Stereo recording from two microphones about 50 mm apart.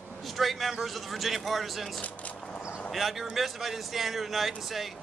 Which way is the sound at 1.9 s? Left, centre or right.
Left.